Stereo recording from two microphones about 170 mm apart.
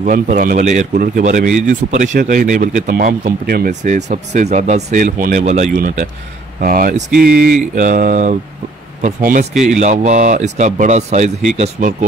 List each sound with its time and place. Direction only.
0.0 s speech: 45° right (ahead or behind)
0.9 s speech: 60° right (ahead or behind)
1.2 s speech: 45° right (ahead or behind)